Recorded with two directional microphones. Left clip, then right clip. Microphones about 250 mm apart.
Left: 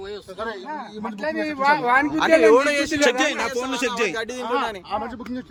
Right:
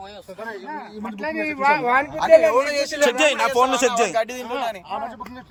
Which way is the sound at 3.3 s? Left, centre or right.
Centre.